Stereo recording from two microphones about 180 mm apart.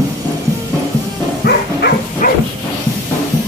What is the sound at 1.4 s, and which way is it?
Dog, 60° left (ahead or behind).